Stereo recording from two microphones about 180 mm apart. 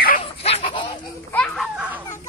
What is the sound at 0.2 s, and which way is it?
Duck, 35° left (ahead or behind).